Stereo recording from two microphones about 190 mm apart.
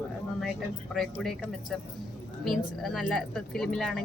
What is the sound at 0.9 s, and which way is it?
Speech, centre (ahead or behind).